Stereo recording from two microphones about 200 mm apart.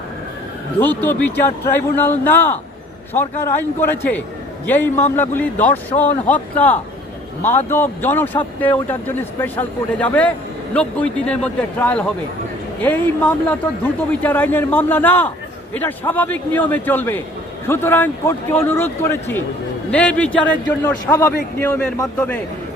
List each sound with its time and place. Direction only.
0.8 s speech: 10° left (ahead or behind)